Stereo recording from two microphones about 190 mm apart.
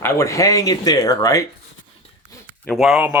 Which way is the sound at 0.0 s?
15° left (ahead or behind).